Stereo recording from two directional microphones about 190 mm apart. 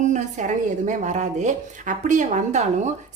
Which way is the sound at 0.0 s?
40° right (ahead or behind).